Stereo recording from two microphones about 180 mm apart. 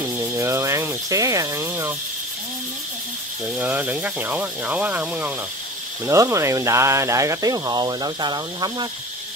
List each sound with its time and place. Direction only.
0.0 s speech: 15° right (ahead or behind)
3.5 s speech: 10° right (ahead or behind)